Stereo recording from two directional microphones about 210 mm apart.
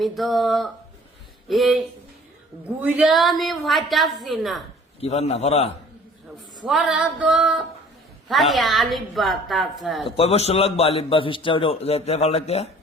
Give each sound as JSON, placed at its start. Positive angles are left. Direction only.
{"t": 0.0, "sound": "a woman's voice", "side_deg": 0}
{"t": 4.9, "sound": "a man's voice", "side_deg": 30}
{"t": 6.7, "sound": "a woman's voice", "side_deg": -5}
{"t": 10.2, "sound": "a man's voice", "side_deg": 30}